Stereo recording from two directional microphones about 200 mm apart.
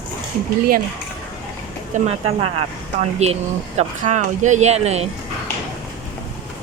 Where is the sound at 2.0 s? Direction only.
30° right (ahead or behind).